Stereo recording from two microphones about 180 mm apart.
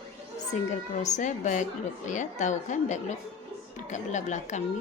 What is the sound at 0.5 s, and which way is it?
A woman's voice, 40° left (ahead or behind).